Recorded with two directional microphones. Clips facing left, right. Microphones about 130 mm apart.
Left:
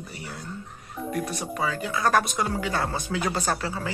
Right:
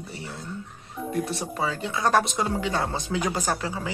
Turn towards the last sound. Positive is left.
turn(degrees=-15)  # may be behind; listen again after turning